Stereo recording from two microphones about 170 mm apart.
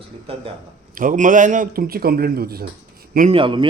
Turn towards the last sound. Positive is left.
turn(degrees=-30)  # may be behind; listen again after turning